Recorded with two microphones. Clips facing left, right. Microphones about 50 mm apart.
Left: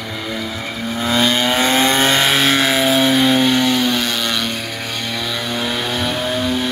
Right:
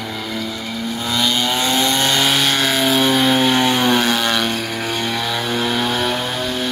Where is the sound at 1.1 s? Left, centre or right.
Left; by 3.5 s centre.